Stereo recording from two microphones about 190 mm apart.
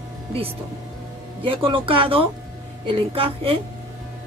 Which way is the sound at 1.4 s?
25° right (ahead or behind).